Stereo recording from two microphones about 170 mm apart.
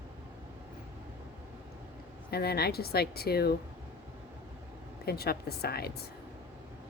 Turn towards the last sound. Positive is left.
turn(degrees=70)  # may be behind; listen again after turning